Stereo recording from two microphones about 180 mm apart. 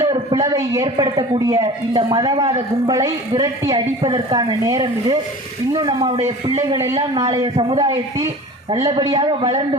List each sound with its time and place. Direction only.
0.0 s a man's voice: 25° right (ahead or behind)
7.4 s a man's voice: 30° right (ahead or behind)